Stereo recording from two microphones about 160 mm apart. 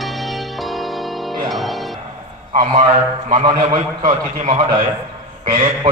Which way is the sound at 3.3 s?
40° right (ahead or behind).